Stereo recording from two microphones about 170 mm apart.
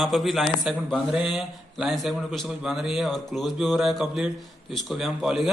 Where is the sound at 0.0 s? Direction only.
Centre (ahead or behind).